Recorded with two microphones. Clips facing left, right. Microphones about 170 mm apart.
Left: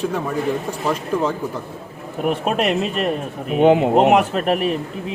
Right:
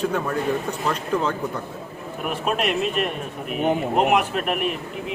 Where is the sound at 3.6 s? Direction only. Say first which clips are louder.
Left 9 dB; 90° left.